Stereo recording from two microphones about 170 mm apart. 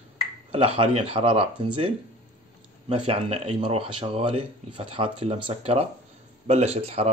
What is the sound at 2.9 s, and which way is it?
Speech, 35° right (ahead or behind).